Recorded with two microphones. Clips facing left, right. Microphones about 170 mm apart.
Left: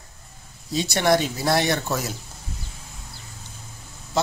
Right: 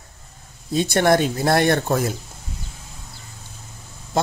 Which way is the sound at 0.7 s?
55° right (ahead or behind).